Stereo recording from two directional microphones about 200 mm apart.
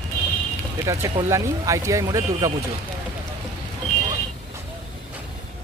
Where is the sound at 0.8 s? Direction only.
15° right (ahead or behind).